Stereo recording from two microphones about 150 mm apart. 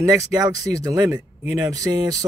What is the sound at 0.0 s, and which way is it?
Speech, 25° right (ahead or behind).